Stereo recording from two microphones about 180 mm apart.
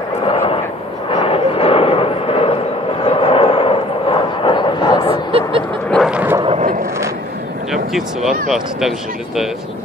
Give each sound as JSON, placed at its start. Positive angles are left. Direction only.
{"t": 0.2, "sound": "a sound", "side_deg": 35}
{"t": 5.9, "sound": "vehicle", "side_deg": 0}
{"t": 7.7, "sound": "speech", "side_deg": 0}